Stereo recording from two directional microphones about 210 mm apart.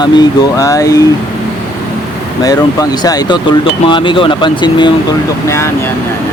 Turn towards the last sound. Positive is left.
turn(degrees=10)  # may be behind; listen again after turning